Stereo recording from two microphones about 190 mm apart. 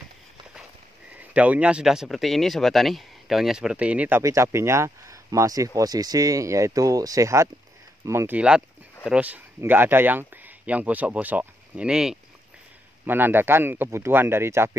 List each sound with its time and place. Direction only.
1.3 s speech: 5° right (ahead or behind)